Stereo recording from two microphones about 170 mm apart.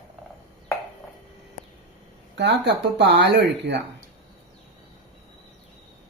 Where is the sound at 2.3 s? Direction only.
90° right.